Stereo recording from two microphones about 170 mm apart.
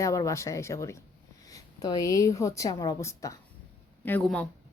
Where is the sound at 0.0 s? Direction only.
20° left (ahead or behind).